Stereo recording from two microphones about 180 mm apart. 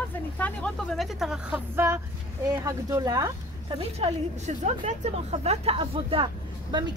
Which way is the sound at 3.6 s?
30° right (ahead or behind).